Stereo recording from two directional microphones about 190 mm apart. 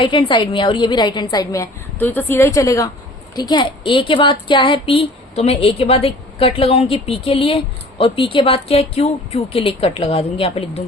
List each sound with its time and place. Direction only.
0.0 s a woman's voice: 25° left (ahead or behind)